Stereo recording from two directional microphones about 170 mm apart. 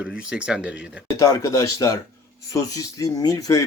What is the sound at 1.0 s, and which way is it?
Speech, 20° left (ahead or behind).